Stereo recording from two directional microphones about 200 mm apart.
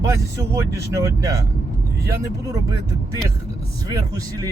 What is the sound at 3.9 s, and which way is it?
Speech, 15° right (ahead or behind).